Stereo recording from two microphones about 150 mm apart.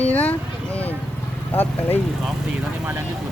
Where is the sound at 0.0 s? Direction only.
10° left (ahead or behind).